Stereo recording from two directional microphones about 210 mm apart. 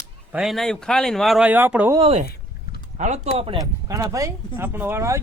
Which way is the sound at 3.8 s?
15° right (ahead or behind).